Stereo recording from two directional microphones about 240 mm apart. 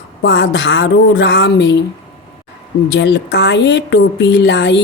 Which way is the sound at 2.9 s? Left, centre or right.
Left.